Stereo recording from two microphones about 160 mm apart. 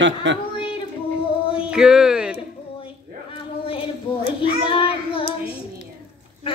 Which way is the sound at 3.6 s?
35° left (ahead or behind).